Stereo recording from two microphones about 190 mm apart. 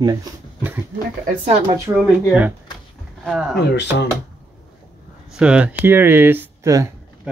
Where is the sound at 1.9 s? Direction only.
10° right (ahead or behind).